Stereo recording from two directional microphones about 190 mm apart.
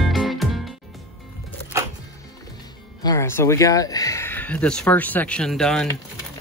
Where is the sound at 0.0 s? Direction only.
Centre (ahead or behind).